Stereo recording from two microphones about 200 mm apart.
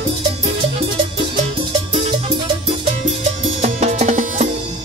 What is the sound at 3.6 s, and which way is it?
Music, 35° right (ahead or behind).